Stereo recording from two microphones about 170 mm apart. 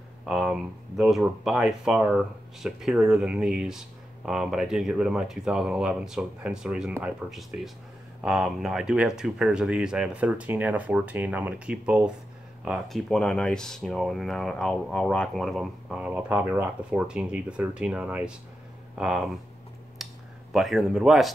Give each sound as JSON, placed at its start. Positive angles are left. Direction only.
{"t": 0.2, "sound": "speech", "side_deg": -5}
{"t": 20.0, "sound": "a sound", "side_deg": 0}
{"t": 20.5, "sound": "speech", "side_deg": 0}